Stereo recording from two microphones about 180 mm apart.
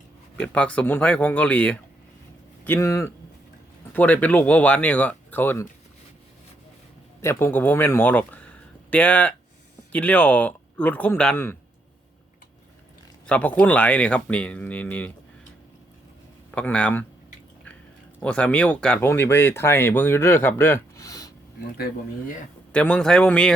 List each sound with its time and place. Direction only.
0.3 s speech: 5° left (ahead or behind)
7.2 s speech: 15° left (ahead or behind)
13.2 s speech: 10° left (ahead or behind)
16.6 s speech: 5° left (ahead or behind)
18.2 s speech: 5° left (ahead or behind)
22.7 s a man's voice: 5° left (ahead or behind)